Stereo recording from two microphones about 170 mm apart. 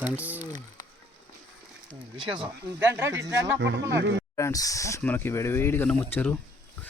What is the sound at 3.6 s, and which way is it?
Speech, 90° right.